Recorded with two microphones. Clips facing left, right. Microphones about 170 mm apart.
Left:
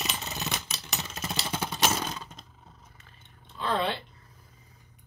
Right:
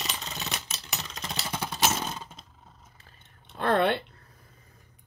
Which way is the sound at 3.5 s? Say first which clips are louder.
Right 5 dB; 60° right (ahead or behind).